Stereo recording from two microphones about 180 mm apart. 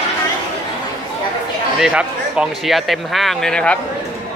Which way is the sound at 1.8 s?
5° right (ahead or behind).